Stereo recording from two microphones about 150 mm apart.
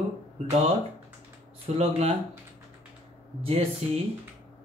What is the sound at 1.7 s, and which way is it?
Speech, 45° right (ahead or behind).